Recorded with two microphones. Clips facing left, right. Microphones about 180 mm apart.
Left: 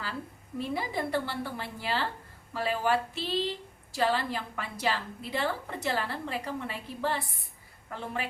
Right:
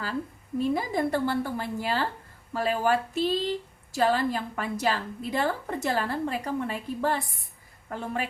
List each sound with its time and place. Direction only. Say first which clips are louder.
0.6 s a woman's voice: right 6 dB; 45° right (ahead or behind)